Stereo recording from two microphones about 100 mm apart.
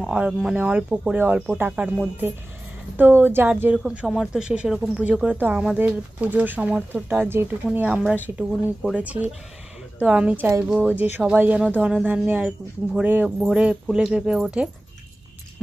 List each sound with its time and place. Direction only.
0.0 s speech: 5° right (ahead or behind); by 3.7 s 20° right (ahead or behind)
3.7 s speech: 10° right (ahead or behind)
7.9 s speech: 5° right (ahead or behind)
8.9 s speech: 15° right (ahead or behind)
13.4 s speech: centre (ahead or behind)